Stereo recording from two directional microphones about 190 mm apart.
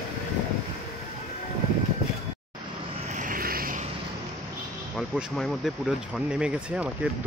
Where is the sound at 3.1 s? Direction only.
45° right (ahead or behind).